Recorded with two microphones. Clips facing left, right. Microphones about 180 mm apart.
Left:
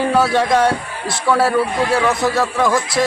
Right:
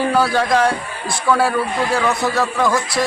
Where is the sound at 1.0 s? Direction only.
5° left (ahead or behind).